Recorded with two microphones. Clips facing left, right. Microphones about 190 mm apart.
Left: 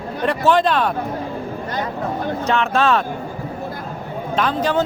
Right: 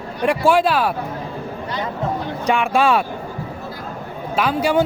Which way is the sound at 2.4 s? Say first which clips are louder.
Right 2 dB; 10° right (ahead or behind).